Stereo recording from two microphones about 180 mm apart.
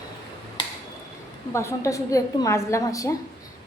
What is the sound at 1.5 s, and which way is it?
A woman's voice, 15° left (ahead or behind).